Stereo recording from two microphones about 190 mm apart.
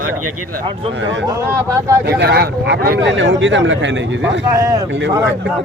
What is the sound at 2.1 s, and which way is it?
Speech, 60° right (ahead or behind).